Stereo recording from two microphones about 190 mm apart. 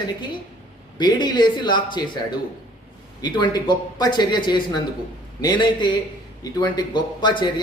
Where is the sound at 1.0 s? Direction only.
20° left (ahead or behind).